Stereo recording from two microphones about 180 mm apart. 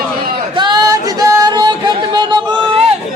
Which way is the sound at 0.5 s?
25° right (ahead or behind).